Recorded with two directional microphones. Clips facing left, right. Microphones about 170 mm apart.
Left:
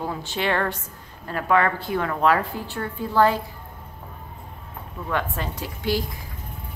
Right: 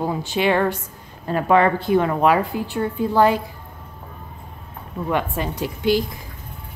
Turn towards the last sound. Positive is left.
turn(degrees=-15)  # may be behind; listen again after turning